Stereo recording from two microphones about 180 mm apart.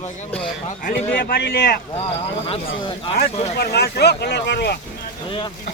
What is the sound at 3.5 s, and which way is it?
Speech, 65° left (ahead or behind).